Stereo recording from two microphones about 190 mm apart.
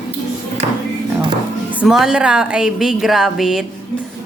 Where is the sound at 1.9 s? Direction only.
Centre (ahead or behind).